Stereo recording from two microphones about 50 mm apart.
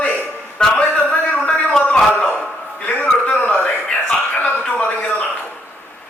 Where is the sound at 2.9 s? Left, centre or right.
Left.